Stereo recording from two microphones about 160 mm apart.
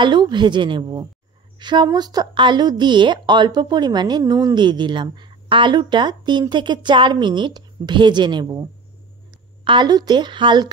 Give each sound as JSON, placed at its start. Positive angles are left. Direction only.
{"t": 0.0, "sound": "a woman's voice", "side_deg": -30}
{"t": 9.7, "sound": "a woman's voice", "side_deg": -25}